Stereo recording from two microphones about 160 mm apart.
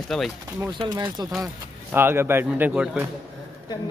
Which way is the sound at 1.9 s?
15° right (ahead or behind).